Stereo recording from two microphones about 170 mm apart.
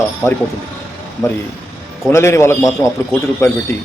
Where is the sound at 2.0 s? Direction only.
15° left (ahead or behind).